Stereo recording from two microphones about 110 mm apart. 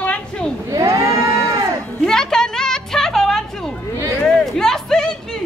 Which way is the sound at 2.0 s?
5° left (ahead or behind).